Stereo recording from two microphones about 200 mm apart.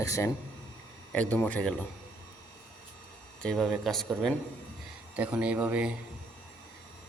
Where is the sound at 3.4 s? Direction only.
Centre (ahead or behind).